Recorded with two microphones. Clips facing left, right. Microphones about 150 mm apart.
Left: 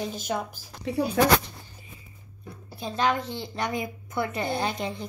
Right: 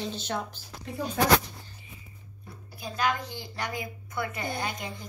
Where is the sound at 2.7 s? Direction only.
25° left (ahead or behind).